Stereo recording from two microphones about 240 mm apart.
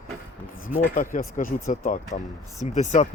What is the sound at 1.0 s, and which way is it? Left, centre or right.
Speech, left.